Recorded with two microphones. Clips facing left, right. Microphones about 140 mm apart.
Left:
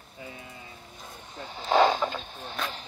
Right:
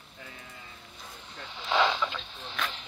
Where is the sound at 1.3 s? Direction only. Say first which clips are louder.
Left 5 dB; 40° left (ahead or behind).